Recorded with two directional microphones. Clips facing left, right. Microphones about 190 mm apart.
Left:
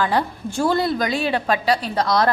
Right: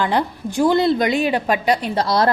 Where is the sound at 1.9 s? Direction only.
30° right (ahead or behind).